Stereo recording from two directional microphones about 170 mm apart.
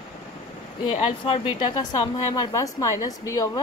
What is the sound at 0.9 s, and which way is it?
Speech, 30° left (ahead or behind).